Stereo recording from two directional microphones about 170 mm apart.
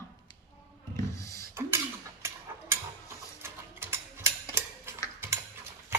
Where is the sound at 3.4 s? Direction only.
15° right (ahead or behind).